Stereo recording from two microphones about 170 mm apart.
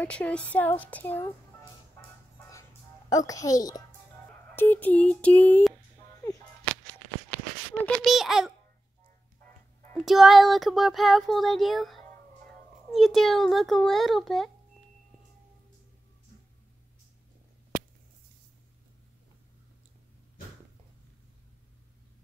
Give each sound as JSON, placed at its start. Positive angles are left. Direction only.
{"t": 0.0, "sound": "speech", "side_deg": 5}
{"t": 3.1, "sound": "a child's voice", "side_deg": 20}
{"t": 4.6, "sound": "a sound", "side_deg": 10}
{"t": 7.8, "sound": "speech", "side_deg": 0}
{"t": 9.9, "sound": "speech", "side_deg": 0}